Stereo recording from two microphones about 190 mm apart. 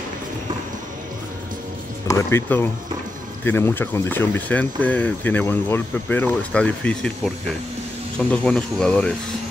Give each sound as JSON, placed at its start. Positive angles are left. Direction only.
{"t": 2.0, "sound": "speech", "side_deg": 15}